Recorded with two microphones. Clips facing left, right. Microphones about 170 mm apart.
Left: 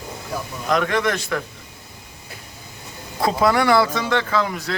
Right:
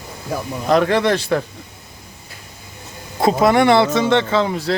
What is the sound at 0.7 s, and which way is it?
Speech, 35° right (ahead or behind).